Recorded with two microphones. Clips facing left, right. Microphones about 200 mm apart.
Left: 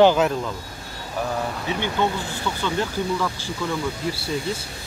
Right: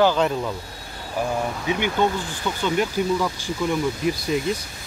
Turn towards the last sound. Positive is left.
turn(degrees=-15)  # may be behind; listen again after turning